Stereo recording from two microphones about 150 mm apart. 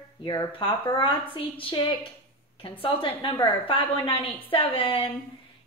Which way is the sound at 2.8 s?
30° left (ahead or behind).